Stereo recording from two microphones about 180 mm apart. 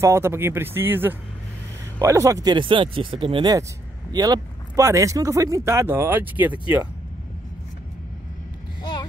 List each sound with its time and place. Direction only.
0.0 s speech: 15° right (ahead or behind)